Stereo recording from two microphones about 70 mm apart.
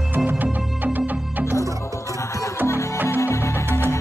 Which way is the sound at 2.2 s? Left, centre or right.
Left.